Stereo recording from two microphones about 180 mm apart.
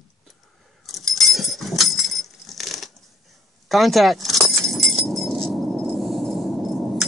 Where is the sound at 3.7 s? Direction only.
Centre (ahead or behind).